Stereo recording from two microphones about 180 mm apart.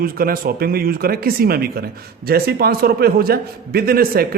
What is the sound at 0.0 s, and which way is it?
A man's voice, 55° right (ahead or behind).